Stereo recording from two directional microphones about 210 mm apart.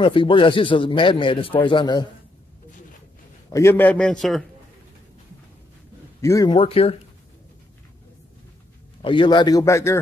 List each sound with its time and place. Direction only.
0.0 s speech: 25° left (ahead or behind)
3.5 s a man's voice: 10° left (ahead or behind)
6.2 s speech: 15° left (ahead or behind)
9.0 s speech: 20° left (ahead or behind)